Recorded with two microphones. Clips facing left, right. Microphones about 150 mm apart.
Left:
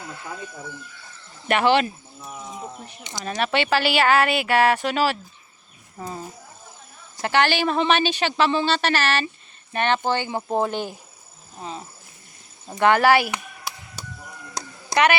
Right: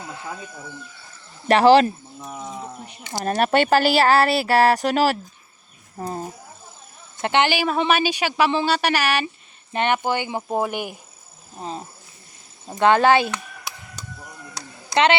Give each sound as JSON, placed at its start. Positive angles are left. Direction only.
{"t": 1.5, "sound": "speech", "side_deg": -35}
{"t": 3.1, "sound": "speech", "side_deg": -45}
{"t": 7.2, "sound": "speech", "side_deg": -20}
{"t": 7.5, "sound": "speech", "side_deg": -10}
{"t": 12.8, "sound": "speech", "side_deg": -20}